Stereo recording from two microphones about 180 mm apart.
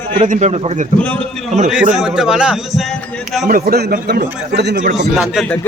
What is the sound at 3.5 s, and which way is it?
A man's voice, 50° right (ahead or behind).